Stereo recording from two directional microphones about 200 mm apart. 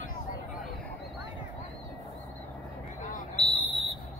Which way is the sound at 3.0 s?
35° left (ahead or behind).